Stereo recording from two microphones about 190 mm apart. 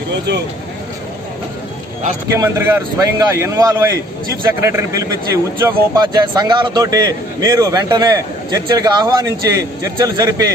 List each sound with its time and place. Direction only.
2.2 s a man's voice: 15° right (ahead or behind)